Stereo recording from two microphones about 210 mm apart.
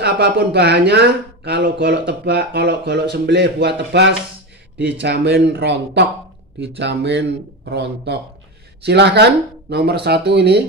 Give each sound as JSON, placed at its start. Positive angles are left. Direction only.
{"t": 0.0, "sound": "speech", "side_deg": -55}